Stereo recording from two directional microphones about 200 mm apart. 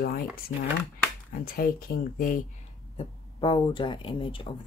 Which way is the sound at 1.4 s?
45° left (ahead or behind).